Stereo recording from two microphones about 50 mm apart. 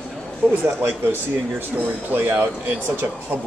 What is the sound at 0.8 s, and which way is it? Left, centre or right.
Speech, right.